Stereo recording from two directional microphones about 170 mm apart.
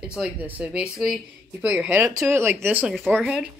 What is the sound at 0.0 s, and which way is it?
Speech, 5° right (ahead or behind).